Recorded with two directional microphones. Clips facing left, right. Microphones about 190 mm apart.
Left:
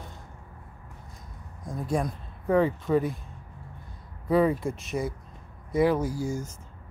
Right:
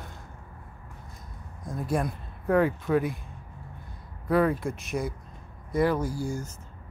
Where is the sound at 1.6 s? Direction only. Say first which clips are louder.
Even; 5° right (ahead or behind).